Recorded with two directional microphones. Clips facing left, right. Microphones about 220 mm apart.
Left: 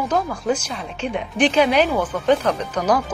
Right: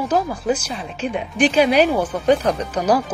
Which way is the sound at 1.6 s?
35° right (ahead or behind).